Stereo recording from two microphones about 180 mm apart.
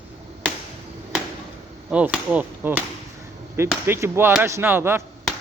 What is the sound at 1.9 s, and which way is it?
Speech, 5° right (ahead or behind).